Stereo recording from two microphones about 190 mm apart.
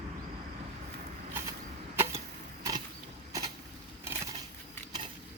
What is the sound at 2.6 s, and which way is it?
Creak, 20° right (ahead or behind).